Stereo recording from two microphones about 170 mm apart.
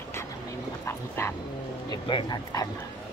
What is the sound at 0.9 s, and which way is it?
Dog, 15° left (ahead or behind).